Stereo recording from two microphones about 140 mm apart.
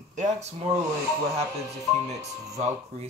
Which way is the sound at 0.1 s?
55° right (ahead or behind).